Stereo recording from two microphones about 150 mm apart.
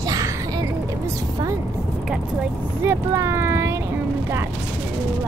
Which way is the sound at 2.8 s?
20° right (ahead or behind).